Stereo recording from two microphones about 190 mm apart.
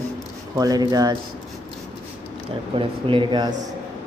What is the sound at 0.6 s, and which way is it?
Speech, 20° right (ahead or behind).